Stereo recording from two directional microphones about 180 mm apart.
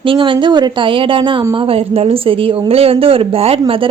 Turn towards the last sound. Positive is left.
turn(degrees=-30)  # may be behind; listen again after turning